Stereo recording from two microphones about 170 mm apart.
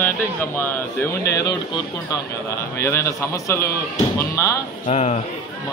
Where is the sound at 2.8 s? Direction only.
15° left (ahead or behind).